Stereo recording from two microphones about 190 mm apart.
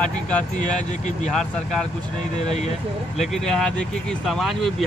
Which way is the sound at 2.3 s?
35° left (ahead or behind).